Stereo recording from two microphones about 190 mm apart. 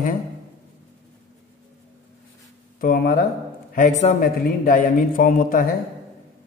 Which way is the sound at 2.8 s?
50° left (ahead or behind).